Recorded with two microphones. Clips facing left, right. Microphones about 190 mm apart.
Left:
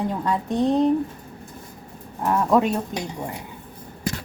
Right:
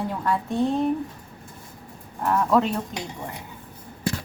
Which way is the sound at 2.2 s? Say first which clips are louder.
Left 2 dB; 15° left (ahead or behind).